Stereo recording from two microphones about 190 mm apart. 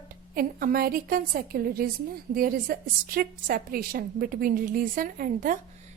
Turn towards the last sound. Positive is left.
turn(degrees=-45)  # may be behind; listen again after turning